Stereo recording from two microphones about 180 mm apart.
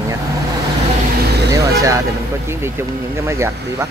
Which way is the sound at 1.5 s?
20° right (ahead or behind).